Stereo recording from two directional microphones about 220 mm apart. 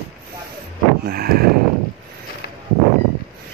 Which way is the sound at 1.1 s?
45° right (ahead or behind).